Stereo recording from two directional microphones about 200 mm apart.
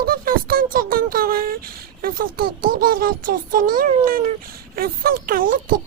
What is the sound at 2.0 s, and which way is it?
Speech, 45° right (ahead or behind).